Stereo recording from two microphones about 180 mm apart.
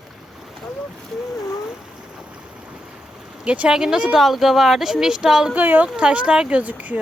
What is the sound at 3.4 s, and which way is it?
Speech, 5° right (ahead or behind).